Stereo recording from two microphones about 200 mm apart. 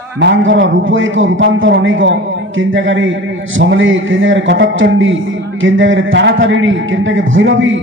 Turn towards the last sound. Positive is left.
turn(degrees=-70)  # may be behind; listen again after turning